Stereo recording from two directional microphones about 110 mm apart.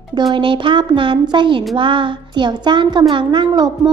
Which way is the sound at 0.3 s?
45° right (ahead or behind).